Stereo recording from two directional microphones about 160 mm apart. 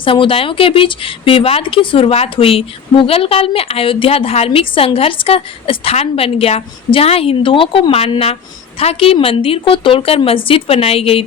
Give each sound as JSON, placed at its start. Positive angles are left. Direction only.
{"t": 0.0, "sound": "speech", "side_deg": 35}